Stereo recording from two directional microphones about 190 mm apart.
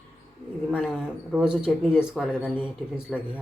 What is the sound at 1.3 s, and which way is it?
Speech, 5° right (ahead or behind).